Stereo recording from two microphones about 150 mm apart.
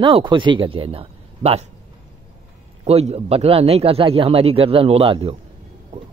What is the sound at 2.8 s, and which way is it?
A man's voice, 45° right (ahead or behind).